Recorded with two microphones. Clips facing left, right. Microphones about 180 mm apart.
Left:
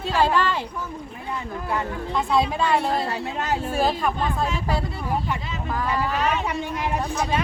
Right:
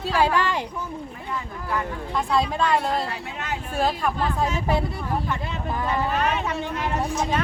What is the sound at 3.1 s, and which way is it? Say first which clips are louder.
Speech: left 5 dB; 35° left (ahead or behind).